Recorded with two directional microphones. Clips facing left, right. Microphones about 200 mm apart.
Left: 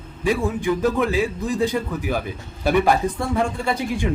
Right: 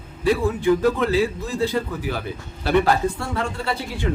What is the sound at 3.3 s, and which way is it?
Speech, 15° left (ahead or behind).